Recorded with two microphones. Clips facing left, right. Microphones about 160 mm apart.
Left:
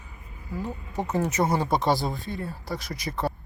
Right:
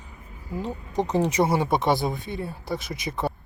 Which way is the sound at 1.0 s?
15° right (ahead or behind).